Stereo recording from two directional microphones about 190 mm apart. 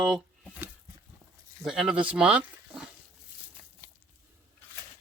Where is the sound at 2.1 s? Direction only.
5° right (ahead or behind).